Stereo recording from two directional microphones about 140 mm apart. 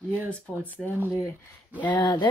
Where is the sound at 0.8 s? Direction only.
Centre (ahead or behind).